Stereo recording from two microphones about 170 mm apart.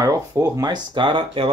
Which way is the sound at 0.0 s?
20° right (ahead or behind).